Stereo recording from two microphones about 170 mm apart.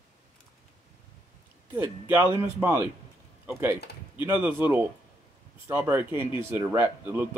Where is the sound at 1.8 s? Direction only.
10° right (ahead or behind).